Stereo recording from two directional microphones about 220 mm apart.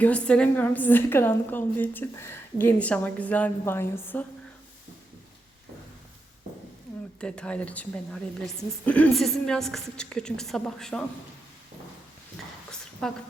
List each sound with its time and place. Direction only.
0.0 s a woman's voice: 5° left (ahead or behind)
7.2 s a woman's voice: 5° left (ahead or behind)
13.0 s a woman's voice: 5° left (ahead or behind)